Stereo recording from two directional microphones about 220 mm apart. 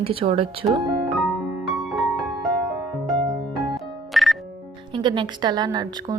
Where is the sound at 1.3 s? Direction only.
Centre (ahead or behind).